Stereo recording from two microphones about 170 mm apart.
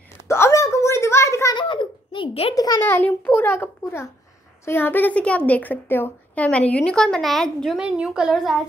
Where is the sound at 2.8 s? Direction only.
10° left (ahead or behind).